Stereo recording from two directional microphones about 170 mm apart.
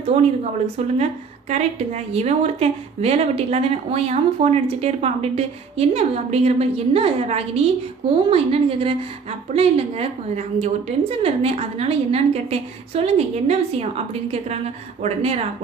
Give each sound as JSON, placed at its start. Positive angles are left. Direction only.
{"t": 1.5, "sound": "a woman's voice", "side_deg": -40}